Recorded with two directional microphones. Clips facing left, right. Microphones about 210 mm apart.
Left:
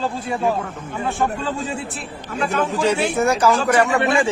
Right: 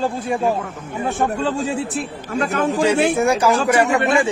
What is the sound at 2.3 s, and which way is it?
Speech, 45° right (ahead or behind).